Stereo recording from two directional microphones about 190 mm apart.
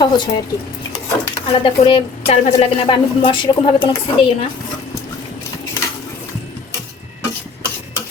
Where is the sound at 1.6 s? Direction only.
30° left (ahead or behind).